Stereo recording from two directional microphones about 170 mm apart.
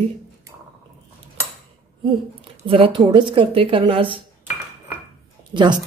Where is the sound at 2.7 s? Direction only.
35° right (ahead or behind).